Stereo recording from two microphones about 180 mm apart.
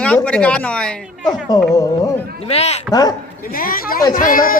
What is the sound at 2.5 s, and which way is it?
Speech, 35° left (ahead or behind).